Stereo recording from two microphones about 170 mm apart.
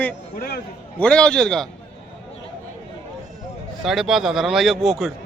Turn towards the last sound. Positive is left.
turn(degrees=0)  # may be behind; listen again after turning